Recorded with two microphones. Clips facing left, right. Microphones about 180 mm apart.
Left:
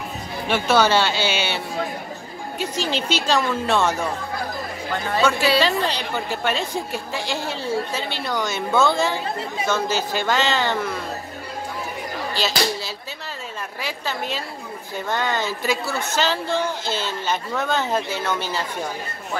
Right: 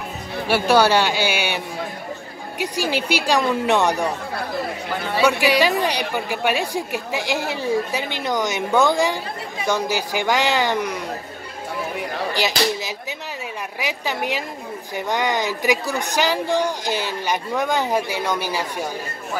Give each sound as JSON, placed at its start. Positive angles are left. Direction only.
{"t": 0.5, "sound": "speech", "side_deg": -10}
{"t": 2.6, "sound": "speech", "side_deg": -15}
{"t": 12.4, "sound": "speech", "side_deg": -15}